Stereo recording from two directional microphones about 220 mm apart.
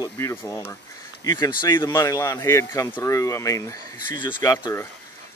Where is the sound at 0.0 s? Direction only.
15° left (ahead or behind).